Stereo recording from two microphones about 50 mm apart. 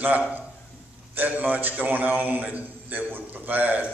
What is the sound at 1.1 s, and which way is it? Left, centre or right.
A man's voice, right.